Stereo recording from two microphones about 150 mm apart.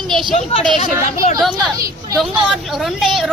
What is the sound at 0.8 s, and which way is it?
Speech, 50° left (ahead or behind).